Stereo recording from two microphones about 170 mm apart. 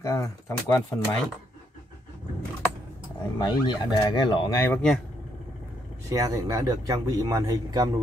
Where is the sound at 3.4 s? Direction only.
25° left (ahead or behind).